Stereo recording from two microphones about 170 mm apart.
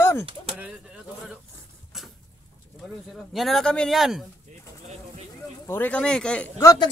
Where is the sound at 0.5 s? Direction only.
5° right (ahead or behind).